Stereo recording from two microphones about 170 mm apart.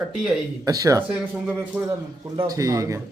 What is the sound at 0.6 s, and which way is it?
Speech, 20° right (ahead or behind).